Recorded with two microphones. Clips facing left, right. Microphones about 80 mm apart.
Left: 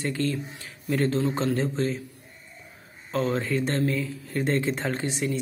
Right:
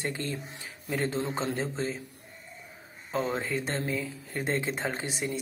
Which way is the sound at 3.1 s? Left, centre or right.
Centre.